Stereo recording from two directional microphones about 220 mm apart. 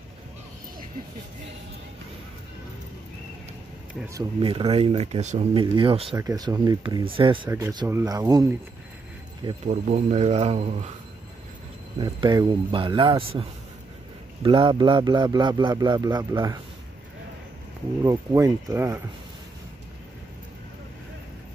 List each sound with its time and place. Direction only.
4.4 s a man's voice: 25° right (ahead or behind)
9.7 s speech: 35° right (ahead or behind)
12.0 s a man's voice: 20° right (ahead or behind)
18.0 s speech: 15° right (ahead or behind)